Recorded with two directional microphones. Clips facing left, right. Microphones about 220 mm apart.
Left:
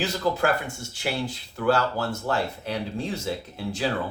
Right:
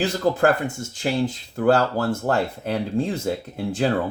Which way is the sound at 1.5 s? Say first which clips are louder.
Right 4 dB; 50° right (ahead or behind).